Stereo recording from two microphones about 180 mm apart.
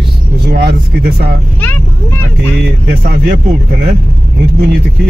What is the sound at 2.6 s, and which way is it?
Speech, 65° right (ahead or behind).